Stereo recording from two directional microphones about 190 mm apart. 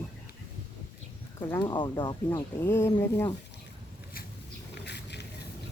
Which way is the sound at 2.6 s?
15° left (ahead or behind).